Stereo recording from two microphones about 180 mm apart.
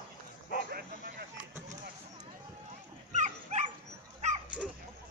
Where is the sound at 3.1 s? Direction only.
40° right (ahead or behind).